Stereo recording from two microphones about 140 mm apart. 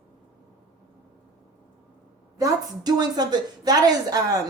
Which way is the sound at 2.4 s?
25° right (ahead or behind).